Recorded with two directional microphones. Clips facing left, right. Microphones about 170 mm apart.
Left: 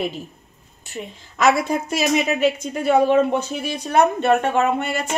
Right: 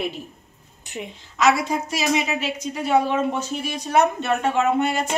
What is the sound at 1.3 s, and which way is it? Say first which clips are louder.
A woman's voice: left 2 dB; 55° left (ahead or behind).